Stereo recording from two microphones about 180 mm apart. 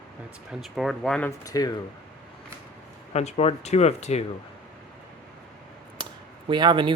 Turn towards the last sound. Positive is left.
turn(degrees=-25)  # may be behind; listen again after turning